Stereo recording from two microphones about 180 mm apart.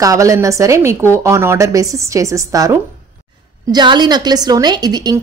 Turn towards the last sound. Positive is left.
turn(degrees=-20)  # may be behind; listen again after turning